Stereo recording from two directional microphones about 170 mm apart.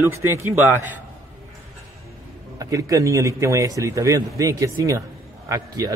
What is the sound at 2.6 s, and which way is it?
A man's voice, 20° right (ahead or behind).